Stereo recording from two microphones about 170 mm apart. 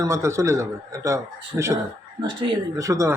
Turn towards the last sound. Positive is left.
turn(degrees=-20)  # may be behind; listen again after turning